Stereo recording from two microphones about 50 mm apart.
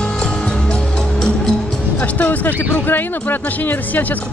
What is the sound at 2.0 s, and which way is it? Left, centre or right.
Speech, left.